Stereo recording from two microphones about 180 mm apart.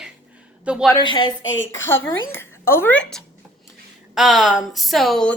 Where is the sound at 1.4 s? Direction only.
90° left.